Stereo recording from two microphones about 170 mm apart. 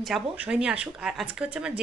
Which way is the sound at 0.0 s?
5° right (ahead or behind).